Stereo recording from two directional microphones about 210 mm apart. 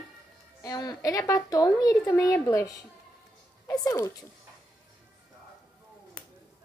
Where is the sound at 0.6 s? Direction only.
20° left (ahead or behind).